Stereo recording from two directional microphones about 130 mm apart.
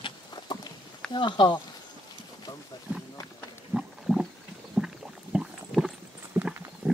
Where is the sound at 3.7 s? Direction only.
5° right (ahead or behind).